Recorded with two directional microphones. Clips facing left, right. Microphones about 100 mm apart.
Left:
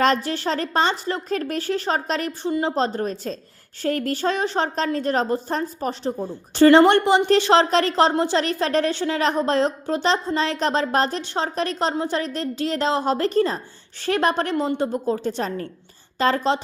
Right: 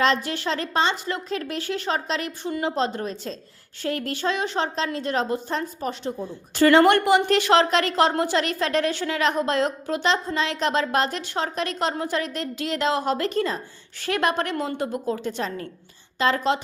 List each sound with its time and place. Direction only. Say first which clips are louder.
0.0 s a woman's voice: left 2 dB; 40° left (ahead or behind)
2.5 s a woman's voice: left 3 dB; 30° left (ahead or behind)